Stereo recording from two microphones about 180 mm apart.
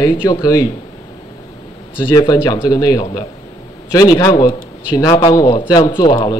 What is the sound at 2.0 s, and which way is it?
Speech, 25° left (ahead or behind).